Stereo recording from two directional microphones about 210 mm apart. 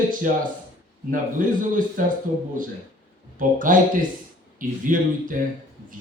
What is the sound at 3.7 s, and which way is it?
Speech, 40° right (ahead or behind).